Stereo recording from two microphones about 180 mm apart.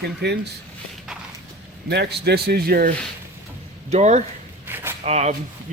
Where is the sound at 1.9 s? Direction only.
65° right (ahead or behind).